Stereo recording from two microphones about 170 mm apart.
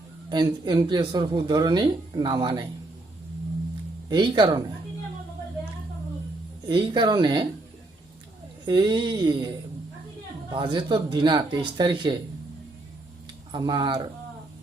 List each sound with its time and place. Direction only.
0.3 s speech: 25° right (ahead or behind)
4.1 s speech: 25° right (ahead or behind)
6.7 s speech: 30° right (ahead or behind)
8.6 s speech: 25° right (ahead or behind)
10.5 s speech: 25° right (ahead or behind)
13.5 s speech: 25° right (ahead or behind)